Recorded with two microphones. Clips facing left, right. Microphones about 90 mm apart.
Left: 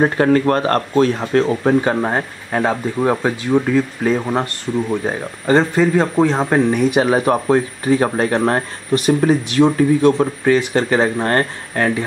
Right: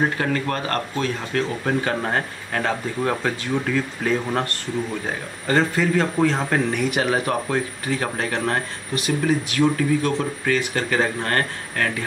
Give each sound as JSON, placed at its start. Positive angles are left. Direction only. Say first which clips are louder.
{"t": 0.0, "sound": "speech", "louder": "left 8 dB", "side_deg": 40}
{"t": 9.2, "sound": "speech", "louder": "left 2 dB", "side_deg": 30}